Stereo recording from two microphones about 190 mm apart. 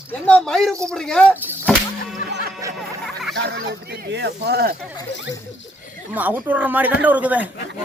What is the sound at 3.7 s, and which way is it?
Speech, 60° right (ahead or behind).